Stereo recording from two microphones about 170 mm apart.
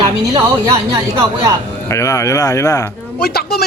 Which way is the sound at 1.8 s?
15° left (ahead or behind).